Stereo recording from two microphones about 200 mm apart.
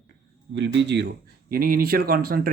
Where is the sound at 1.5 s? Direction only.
45° right (ahead or behind).